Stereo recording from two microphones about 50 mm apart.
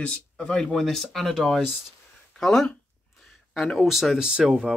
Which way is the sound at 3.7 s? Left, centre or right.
Centre.